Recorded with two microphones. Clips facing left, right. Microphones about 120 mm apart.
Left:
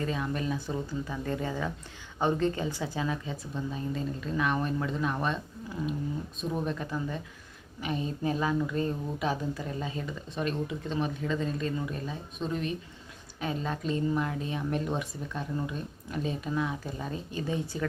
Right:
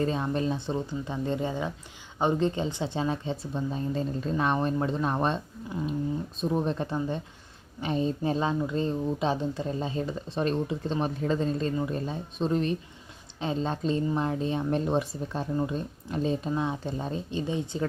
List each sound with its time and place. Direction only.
0.0 s speech: 30° right (ahead or behind)